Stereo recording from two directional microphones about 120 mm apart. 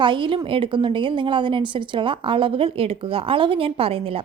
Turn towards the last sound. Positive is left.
turn(degrees=-50)  # may be behind; listen again after turning